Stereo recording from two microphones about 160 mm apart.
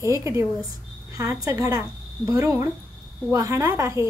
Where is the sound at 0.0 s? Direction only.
20° right (ahead or behind).